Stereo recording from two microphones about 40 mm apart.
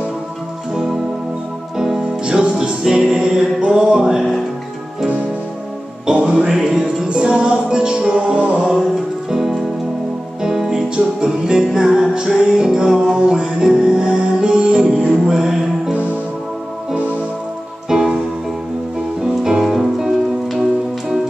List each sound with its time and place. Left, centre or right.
1.8 s music: centre
6.0 s music: right
7.1 s music: right
9.3 s music: centre
17.8 s music: centre
19.2 s music: centre
19.6 s music: centre